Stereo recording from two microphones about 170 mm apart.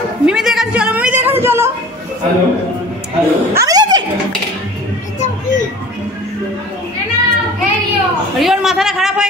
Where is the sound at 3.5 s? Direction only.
20° right (ahead or behind).